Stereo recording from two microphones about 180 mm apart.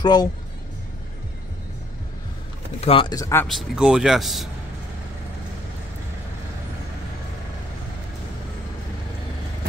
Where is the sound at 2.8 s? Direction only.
30° left (ahead or behind).